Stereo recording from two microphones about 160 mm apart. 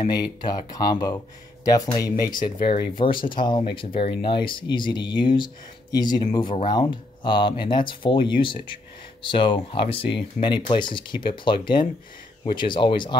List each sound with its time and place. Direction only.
0.1 s speech: 25° left (ahead or behind)